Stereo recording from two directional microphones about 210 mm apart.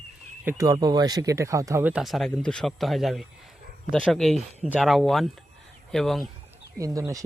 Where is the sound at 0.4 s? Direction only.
15° right (ahead or behind); by 6.2 s centre (ahead or behind).